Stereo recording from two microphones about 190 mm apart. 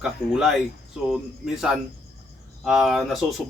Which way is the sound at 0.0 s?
Centre (ahead or behind).